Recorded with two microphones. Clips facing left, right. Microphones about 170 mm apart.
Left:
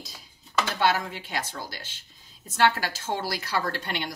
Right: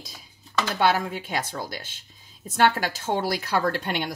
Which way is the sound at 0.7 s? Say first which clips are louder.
Right 4 dB; 50° right (ahead or behind).